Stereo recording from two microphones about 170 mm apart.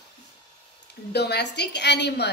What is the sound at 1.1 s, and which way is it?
A woman's voice, 75° left (ahead or behind).